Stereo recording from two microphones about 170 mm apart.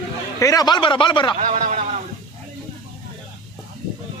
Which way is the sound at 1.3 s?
50° right (ahead or behind).